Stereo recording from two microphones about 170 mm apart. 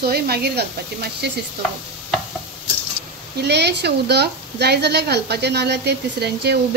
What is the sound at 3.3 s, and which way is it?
A woman's voice, 80° right.